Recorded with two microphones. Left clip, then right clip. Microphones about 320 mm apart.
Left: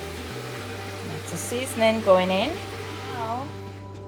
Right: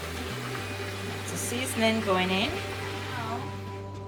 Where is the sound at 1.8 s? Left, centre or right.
Centre.